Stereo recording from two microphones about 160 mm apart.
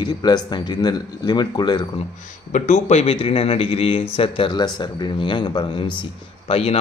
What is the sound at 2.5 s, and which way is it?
Speech, 45° left (ahead or behind).